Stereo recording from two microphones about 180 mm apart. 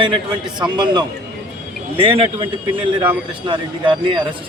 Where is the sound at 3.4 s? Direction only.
25° right (ahead or behind).